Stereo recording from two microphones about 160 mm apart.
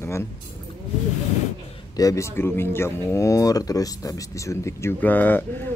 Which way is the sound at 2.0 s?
20° left (ahead or behind).